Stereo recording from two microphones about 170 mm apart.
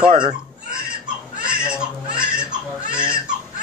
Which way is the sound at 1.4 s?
5° right (ahead or behind).